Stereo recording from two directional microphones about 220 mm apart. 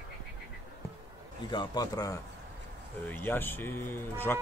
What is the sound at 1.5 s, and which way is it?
Speech, 20° left (ahead or behind).